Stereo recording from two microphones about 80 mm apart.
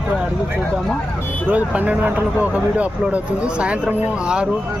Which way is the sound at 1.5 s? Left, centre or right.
Right.